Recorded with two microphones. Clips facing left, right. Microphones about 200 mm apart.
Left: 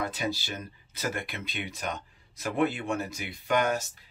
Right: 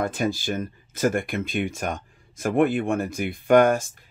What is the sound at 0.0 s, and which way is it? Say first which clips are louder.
Speech: right 7 dB; 50° right (ahead or behind).